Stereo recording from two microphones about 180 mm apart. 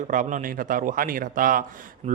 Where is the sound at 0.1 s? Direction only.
45° right (ahead or behind).